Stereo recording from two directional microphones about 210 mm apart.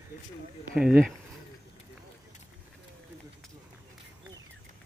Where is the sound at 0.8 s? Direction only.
5° right (ahead or behind).